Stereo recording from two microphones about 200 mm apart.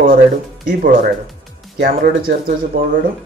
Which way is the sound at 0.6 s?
45° right (ahead or behind).